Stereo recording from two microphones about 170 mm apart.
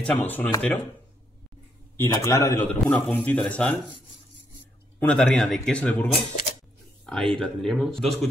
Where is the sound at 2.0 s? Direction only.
15° left (ahead or behind).